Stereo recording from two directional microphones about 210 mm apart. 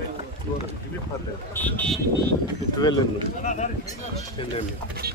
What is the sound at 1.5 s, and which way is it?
Speech, 5° left (ahead or behind).